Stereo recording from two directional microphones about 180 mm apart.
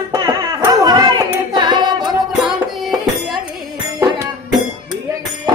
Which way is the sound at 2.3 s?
Centre (ahead or behind).